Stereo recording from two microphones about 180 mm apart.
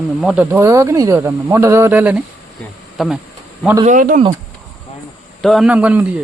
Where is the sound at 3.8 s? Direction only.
45° right (ahead or behind).